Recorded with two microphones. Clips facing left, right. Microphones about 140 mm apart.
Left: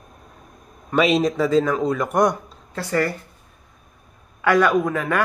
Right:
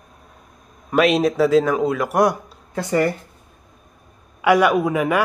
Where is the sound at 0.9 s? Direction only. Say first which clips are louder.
Right 2 dB; centre (ahead or behind).